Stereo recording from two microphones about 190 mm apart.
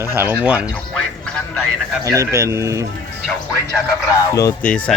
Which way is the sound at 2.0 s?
15° right (ahead or behind).